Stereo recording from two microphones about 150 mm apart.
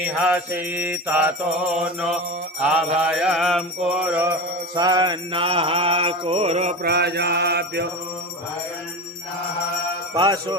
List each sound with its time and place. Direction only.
0.3 s mantra: 10° right (ahead or behind)
4.7 s mantra: 25° right (ahead or behind); by 6.7 s 45° right (ahead or behind)
6.8 s mantra: 90° right
10.2 s jingle bell: 30° right (ahead or behind)